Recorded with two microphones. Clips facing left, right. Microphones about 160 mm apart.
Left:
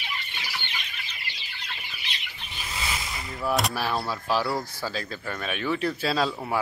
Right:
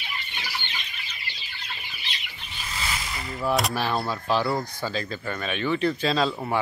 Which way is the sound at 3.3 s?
Centre (ahead or behind).